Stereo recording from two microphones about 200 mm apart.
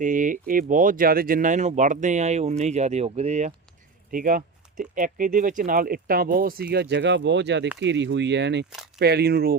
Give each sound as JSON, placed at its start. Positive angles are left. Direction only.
{"t": 0.0, "sound": "speech", "side_deg": -40}
{"t": 4.1, "sound": "speech", "side_deg": -45}